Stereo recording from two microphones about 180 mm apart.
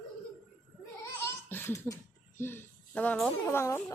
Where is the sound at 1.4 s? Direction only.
10° left (ahead or behind).